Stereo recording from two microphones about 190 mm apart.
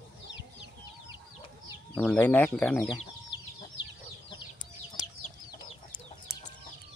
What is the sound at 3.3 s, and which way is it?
Chicken, 25° left (ahead or behind).